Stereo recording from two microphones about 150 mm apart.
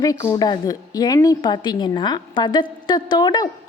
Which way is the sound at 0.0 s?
25° left (ahead or behind).